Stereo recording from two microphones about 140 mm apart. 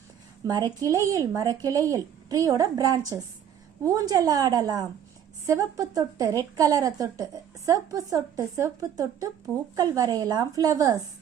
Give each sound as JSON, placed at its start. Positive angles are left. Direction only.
{"t": 0.4, "sound": "a woman's voice", "side_deg": -25}